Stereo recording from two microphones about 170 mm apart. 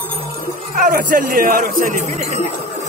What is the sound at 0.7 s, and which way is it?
Speech, 55° right (ahead or behind).